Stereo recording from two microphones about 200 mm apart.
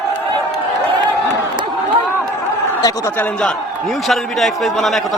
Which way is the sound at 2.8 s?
20° left (ahead or behind).